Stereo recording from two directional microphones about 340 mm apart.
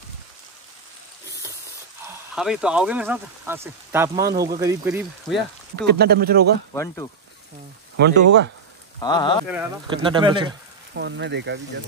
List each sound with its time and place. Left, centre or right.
2.0 s speech: centre
5.8 s speech: right
6.7 s speech: centre
8.0 s speech: right
9.0 s speech: centre
9.5 s speech: centre
11.0 s speech: right